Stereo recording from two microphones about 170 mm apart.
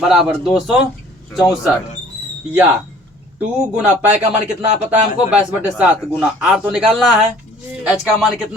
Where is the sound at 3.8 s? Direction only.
10° right (ahead or behind).